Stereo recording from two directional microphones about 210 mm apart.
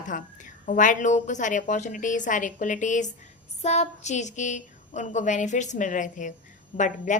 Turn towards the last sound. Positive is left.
turn(degrees=35)  # may be behind; listen again after turning